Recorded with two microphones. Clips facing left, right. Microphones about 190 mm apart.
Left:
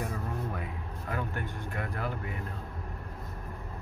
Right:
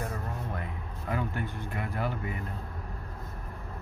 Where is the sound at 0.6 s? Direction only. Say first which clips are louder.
Even; centre (ahead or behind).